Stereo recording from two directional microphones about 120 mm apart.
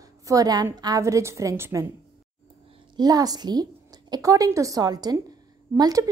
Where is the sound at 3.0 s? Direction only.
30° right (ahead or behind).